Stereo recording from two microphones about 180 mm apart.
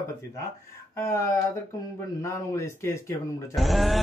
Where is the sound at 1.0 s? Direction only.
15° left (ahead or behind).